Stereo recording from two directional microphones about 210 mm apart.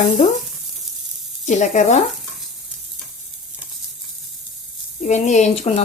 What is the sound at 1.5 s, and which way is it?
Speech, 35° left (ahead or behind).